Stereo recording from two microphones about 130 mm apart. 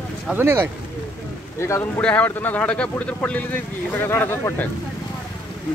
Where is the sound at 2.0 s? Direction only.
10° left (ahead or behind).